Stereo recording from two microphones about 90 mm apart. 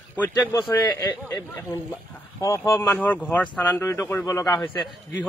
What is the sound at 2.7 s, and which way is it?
A man's voice, 20° left (ahead or behind).